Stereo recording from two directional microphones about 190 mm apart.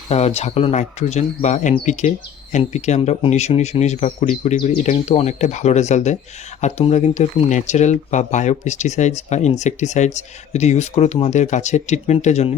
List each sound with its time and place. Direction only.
0.1 s speech: 35° left (ahead or behind)